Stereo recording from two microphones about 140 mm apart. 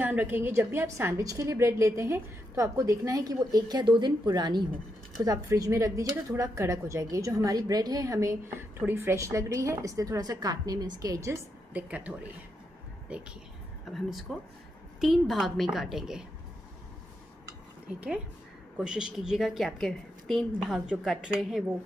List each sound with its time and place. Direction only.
0.0 s a woman's voice: 10° right (ahead or behind)
11.7 s a woman's voice: 10° right (ahead or behind)
18.8 s a woman's voice: 5° right (ahead or behind)